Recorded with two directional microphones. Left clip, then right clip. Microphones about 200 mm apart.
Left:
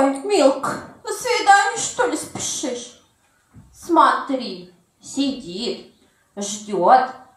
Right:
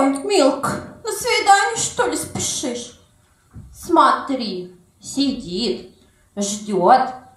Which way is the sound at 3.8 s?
35° right (ahead or behind).